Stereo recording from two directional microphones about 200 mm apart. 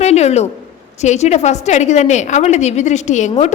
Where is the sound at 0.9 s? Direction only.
35° left (ahead or behind).